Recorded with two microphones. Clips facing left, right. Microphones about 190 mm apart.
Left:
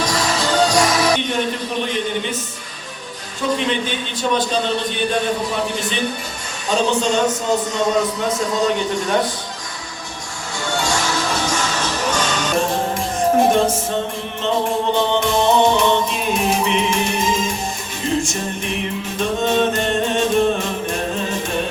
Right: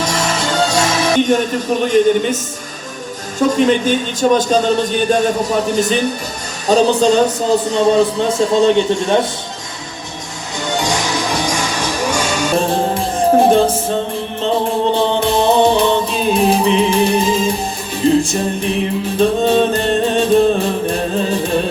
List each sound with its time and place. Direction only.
0.0 s music: 25° right (ahead or behind)
1.2 s a man's voice: 45° right (ahead or behind)
3.4 s a man's voice: 45° right (ahead or behind); by 9.2 s 25° right (ahead or behind)
10.7 s music: 15° right (ahead or behind)
12.5 s music: 30° right (ahead or behind)
14.9 s music: 35° right (ahead or behind)